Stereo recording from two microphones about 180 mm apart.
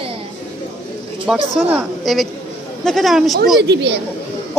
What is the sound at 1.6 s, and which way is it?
Speech, centre (ahead or behind).